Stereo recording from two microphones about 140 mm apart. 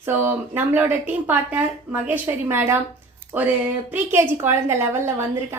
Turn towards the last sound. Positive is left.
turn(degrees=-15)  # may be behind; listen again after turning